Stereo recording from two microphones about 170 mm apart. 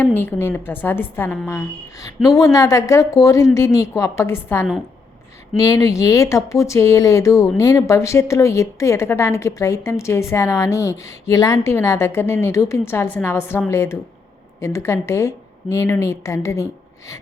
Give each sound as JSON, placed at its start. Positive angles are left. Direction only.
{"t": 0.0, "sound": "speech", "side_deg": 10}